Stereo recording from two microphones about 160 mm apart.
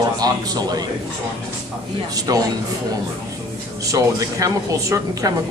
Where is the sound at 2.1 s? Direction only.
25° right (ahead or behind).